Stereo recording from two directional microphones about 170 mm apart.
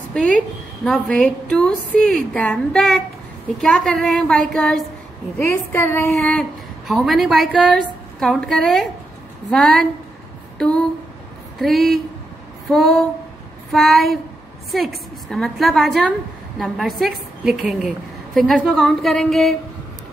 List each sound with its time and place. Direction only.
0.1 s a woman's voice: 5° left (ahead or behind)
5.4 s a sound: 15° left (ahead or behind)
6.9 s a woman's voice: centre (ahead or behind)
11.5 s a woman's voice: centre (ahead or behind)
12.6 s a sound: centre (ahead or behind)
13.7 s a woman's voice: centre (ahead or behind)